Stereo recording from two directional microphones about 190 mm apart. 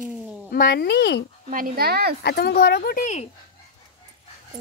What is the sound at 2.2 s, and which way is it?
Speech, 55° left (ahead or behind).